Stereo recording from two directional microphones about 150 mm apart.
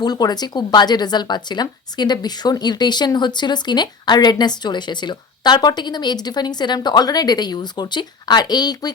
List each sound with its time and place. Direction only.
0.0 s a woman's voice: 25° left (ahead or behind)